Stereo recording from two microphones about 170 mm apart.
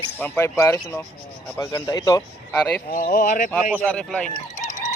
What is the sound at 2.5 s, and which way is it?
Speech, 10° left (ahead or behind).